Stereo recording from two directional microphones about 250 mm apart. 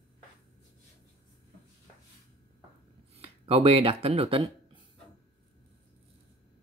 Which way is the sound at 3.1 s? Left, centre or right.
Right.